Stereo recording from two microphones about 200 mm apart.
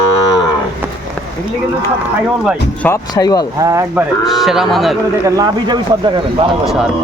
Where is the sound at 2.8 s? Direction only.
15° left (ahead or behind).